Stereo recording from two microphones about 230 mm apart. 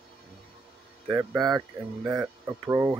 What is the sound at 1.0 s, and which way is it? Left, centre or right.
Speech, centre.